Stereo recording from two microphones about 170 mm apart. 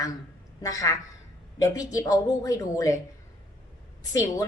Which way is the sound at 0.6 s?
20° left (ahead or behind).